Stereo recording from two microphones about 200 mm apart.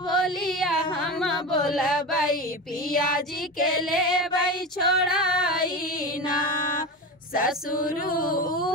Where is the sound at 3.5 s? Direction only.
45° left (ahead or behind).